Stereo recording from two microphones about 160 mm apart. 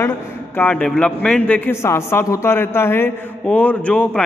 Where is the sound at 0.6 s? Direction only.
5° left (ahead or behind).